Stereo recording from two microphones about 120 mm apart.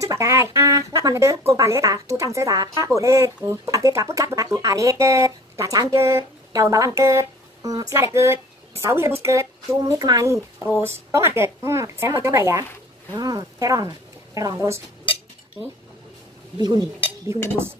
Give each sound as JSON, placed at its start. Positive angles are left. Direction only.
{"t": 0.0, "sound": "a woman's voice", "side_deg": -25}
{"t": 16.5, "sound": "speech", "side_deg": -35}
{"t": 17.3, "sound": "speech", "side_deg": -20}